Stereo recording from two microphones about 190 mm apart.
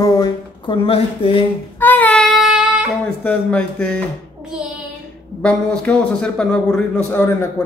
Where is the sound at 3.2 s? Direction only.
5° left (ahead or behind).